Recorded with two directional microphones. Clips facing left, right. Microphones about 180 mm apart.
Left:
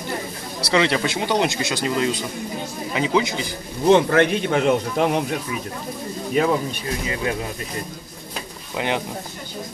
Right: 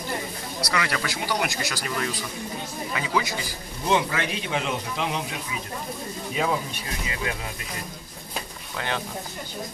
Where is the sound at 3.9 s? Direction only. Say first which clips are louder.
Left 9 dB; 55° left (ahead or behind).